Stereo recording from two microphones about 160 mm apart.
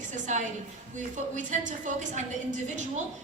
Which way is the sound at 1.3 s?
50° right (ahead or behind).